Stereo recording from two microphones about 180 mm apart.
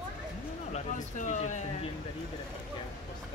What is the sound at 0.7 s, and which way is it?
Speech, 40° left (ahead or behind).